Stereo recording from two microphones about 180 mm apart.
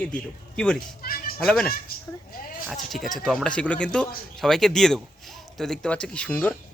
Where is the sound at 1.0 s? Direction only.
55° left (ahead or behind).